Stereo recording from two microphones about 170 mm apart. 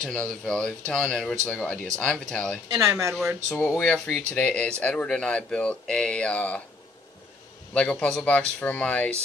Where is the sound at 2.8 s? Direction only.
15° right (ahead or behind).